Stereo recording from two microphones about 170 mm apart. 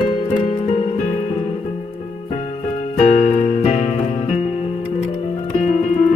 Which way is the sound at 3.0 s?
45° left (ahead or behind).